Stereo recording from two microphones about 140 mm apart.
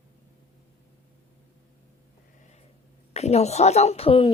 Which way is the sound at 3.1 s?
50° left (ahead or behind).